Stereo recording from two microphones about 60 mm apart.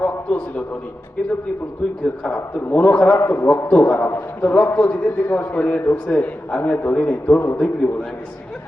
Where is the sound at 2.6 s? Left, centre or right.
Left.